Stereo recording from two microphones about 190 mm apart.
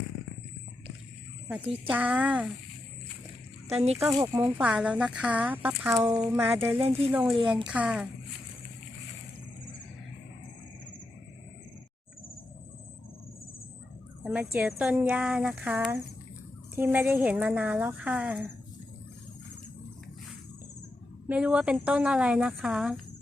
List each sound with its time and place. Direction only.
1.6 s speech: 30° right (ahead or behind)
1.9 s speech: 5° right (ahead or behind)
3.7 s speech: 35° right (ahead or behind)
4.3 s speech: 10° right (ahead or behind)
6.1 s speech: 15° right (ahead or behind)
6.7 s speech: 30° right (ahead or behind)
7.1 s speech: 5° right (ahead or behind)
14.3 s speech: 5° right (ahead or behind)
21.2 s speech: 5° right (ahead or behind)